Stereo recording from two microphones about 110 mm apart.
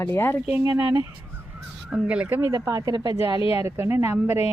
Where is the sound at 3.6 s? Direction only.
20° right (ahead or behind).